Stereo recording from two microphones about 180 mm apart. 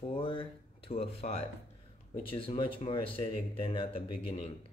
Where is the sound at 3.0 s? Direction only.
30° left (ahead or behind).